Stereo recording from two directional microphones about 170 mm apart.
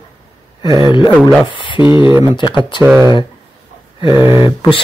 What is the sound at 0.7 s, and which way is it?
Speech, 25° left (ahead or behind).